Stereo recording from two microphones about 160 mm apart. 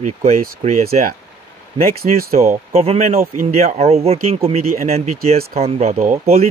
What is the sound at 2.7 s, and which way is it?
Speech, 40° right (ahead or behind).